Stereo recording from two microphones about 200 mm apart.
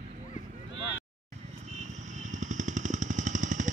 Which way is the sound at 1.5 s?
35° right (ahead or behind).